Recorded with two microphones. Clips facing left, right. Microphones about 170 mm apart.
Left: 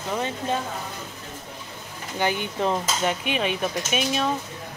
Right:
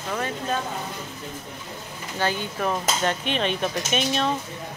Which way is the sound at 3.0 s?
10° left (ahead or behind).